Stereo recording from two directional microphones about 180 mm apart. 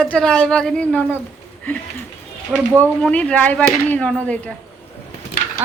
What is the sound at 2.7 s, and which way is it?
Speech, 10° left (ahead or behind).